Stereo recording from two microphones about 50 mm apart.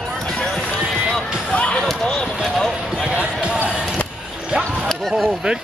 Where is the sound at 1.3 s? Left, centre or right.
Centre.